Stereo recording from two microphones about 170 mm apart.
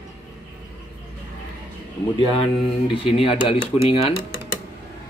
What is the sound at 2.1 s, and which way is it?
Speech, 30° left (ahead or behind).